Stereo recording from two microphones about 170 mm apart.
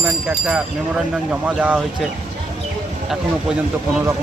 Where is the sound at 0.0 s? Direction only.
10° right (ahead or behind).